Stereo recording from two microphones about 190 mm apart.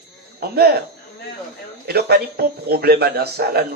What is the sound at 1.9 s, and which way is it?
Speech, 55° right (ahead or behind).